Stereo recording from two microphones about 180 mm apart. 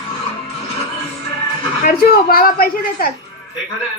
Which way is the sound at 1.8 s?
55° left (ahead or behind).